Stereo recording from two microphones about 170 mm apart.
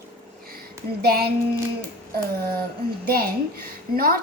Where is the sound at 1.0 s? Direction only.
70° right (ahead or behind).